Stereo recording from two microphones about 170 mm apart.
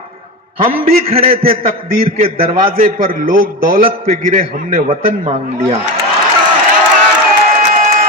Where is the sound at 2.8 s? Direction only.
55° right (ahead or behind).